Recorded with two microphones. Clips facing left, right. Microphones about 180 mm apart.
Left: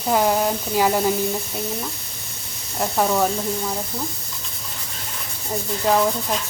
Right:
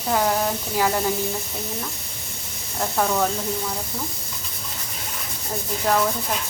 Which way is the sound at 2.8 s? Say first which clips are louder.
Left 2 dB; 10° left (ahead or behind).